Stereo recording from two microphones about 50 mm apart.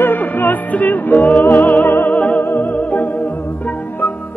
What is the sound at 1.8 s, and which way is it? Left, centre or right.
Music, left.